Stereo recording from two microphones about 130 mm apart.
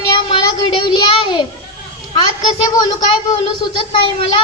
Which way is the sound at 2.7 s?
30° left (ahead or behind).